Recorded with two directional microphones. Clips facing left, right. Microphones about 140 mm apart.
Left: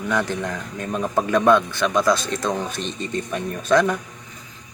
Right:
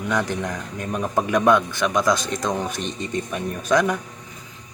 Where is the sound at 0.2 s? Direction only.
15° right (ahead or behind).